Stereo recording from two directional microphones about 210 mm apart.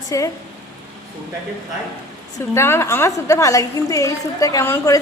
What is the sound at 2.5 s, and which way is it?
A woman's voice, 10° left (ahead or behind).